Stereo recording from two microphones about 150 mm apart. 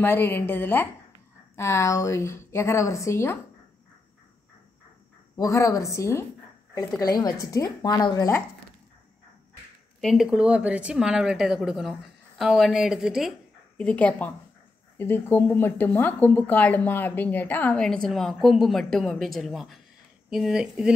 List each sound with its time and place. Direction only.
0.0 s a woman's voice: 15° left (ahead or behind)
5.3 s a woman's voice: 20° left (ahead or behind)
9.9 s speech: centre (ahead or behind)
13.7 s speech: 10° left (ahead or behind)